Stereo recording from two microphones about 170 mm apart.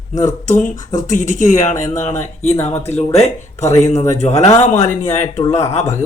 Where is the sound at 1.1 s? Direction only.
45° left (ahead or behind).